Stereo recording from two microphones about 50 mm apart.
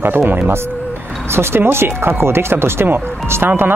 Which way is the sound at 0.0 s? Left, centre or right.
Right.